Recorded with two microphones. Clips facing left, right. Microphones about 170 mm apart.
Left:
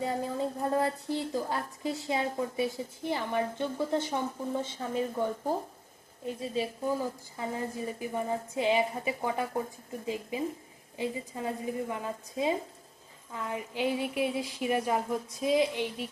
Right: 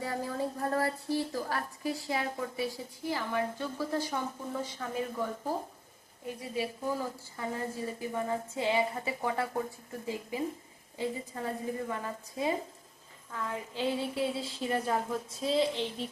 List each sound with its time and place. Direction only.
0.0 s a woman's voice: 20° left (ahead or behind)
6.2 s a woman's voice: 25° left (ahead or behind)